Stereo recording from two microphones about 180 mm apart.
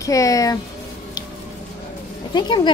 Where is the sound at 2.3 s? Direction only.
25° left (ahead or behind).